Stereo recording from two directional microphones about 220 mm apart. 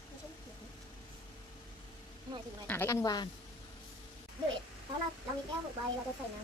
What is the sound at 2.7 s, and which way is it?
Speech, 10° left (ahead or behind).